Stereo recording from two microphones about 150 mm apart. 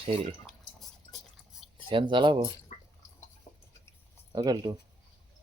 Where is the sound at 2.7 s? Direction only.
50° left (ahead or behind).